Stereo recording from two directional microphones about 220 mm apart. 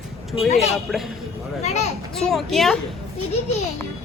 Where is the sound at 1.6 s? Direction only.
30° left (ahead or behind).